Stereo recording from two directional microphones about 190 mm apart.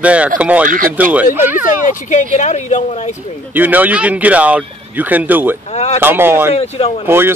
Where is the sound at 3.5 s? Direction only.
10° right (ahead or behind).